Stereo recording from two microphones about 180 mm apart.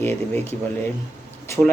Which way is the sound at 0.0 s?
10° left (ahead or behind).